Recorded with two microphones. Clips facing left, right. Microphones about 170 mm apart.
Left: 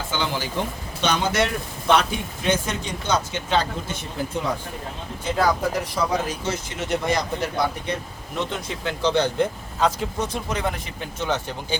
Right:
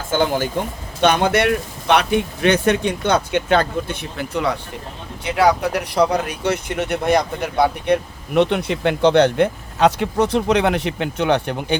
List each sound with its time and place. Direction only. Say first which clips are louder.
0.1 s speech: right 10 dB; 50° right (ahead or behind)